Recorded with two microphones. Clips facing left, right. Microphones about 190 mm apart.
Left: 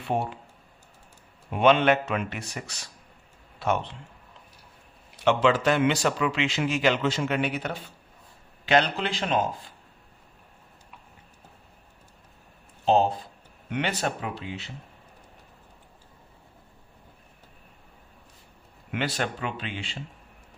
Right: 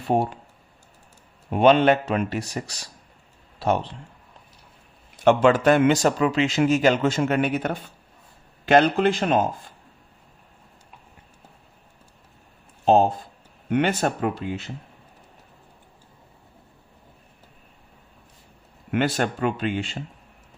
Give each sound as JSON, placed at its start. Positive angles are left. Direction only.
{"t": 0.0, "sound": "speech", "side_deg": -40}
{"t": 1.5, "sound": "speech", "side_deg": -35}
{"t": 5.2, "sound": "speech", "side_deg": -50}
{"t": 12.8, "sound": "speech", "side_deg": -45}
{"t": 18.9, "sound": "speech", "side_deg": -50}